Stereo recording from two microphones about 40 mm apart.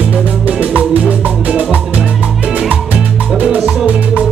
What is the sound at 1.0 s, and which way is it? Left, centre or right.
Music, right.